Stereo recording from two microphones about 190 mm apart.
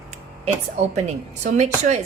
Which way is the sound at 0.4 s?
35° right (ahead or behind).